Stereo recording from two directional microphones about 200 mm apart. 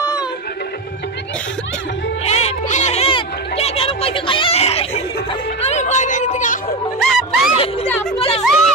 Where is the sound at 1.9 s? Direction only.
65° left (ahead or behind).